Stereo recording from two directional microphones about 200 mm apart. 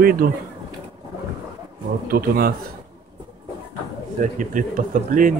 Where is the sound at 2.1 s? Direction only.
45° right (ahead or behind).